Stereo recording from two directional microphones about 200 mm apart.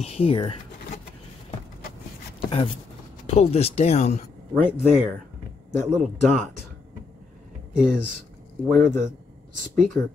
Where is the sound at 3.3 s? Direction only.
30° left (ahead or behind).